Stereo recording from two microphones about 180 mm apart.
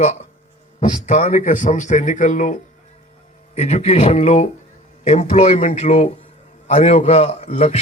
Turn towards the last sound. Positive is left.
turn(degrees=35)  # may be behind; listen again after turning